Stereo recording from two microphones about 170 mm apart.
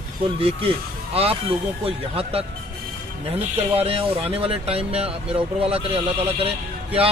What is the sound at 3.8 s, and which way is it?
Speech, 35° right (ahead or behind).